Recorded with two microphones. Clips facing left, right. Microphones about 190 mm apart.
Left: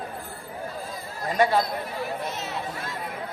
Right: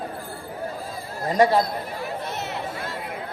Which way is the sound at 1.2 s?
40° right (ahead or behind).